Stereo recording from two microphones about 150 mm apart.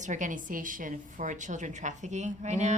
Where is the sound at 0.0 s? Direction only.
55° right (ahead or behind).